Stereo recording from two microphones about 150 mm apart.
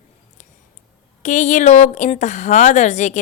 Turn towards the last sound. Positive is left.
turn(degrees=50)  # may be behind; listen again after turning